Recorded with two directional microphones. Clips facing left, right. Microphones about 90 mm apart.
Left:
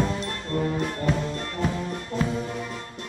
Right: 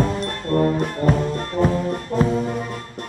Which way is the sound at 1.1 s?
45° right (ahead or behind).